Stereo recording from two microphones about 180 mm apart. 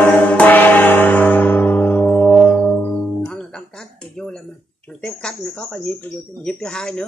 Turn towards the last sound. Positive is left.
turn(degrees=5)  # may be behind; listen again after turning